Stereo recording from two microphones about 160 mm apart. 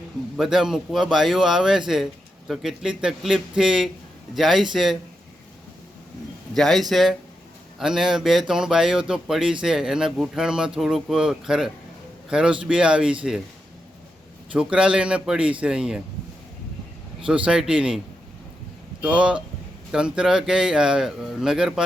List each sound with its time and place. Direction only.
0.3 s speech: centre (ahead or behind)
6.5 s speech: centre (ahead or behind)
14.5 s a man's voice: 5° right (ahead or behind)
17.2 s speech: 5° right (ahead or behind)
19.0 s a man's voice: 5° right (ahead or behind)